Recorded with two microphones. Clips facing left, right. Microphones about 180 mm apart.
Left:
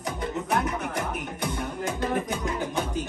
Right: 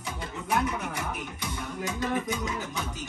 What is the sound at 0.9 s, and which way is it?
Music, 55° left (ahead or behind).